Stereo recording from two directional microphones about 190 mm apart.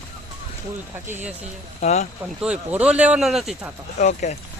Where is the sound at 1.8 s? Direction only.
35° left (ahead or behind).